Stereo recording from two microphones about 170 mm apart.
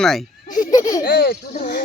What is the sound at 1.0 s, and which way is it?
Speech, 60° left (ahead or behind).